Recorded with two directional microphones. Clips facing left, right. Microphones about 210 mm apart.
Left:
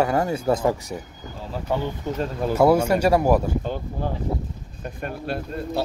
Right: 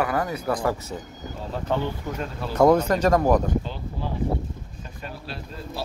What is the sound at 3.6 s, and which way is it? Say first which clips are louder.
Speech: left 5 dB; 50° left (ahead or behind).